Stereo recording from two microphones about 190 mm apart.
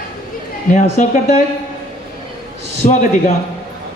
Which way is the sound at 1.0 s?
45° left (ahead or behind).